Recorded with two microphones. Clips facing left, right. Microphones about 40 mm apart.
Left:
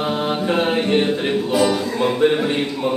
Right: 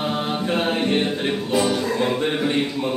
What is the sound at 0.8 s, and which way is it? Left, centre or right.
Music, centre.